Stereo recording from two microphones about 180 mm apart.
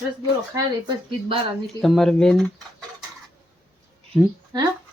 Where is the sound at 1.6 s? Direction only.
Centre (ahead or behind).